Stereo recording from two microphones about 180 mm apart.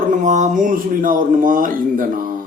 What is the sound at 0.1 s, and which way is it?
Speech, 40° right (ahead or behind).